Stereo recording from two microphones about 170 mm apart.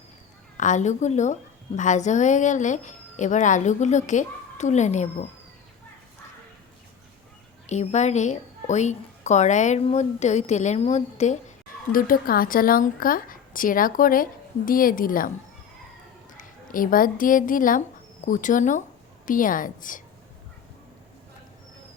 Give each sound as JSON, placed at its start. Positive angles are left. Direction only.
{"t": 0.5, "sound": "a woman's voice", "side_deg": 45}
{"t": 7.7, "sound": "a woman's voice", "side_deg": 40}
{"t": 16.4, "sound": "a woman's voice", "side_deg": 55}